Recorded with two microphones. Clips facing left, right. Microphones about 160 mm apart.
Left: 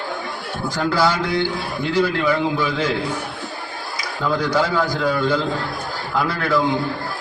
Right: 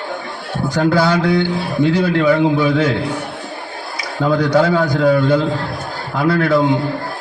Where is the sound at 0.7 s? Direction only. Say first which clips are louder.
Right 5 dB; 55° right (ahead or behind).